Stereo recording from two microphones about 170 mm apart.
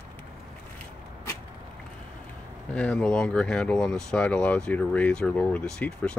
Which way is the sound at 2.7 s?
5° left (ahead or behind).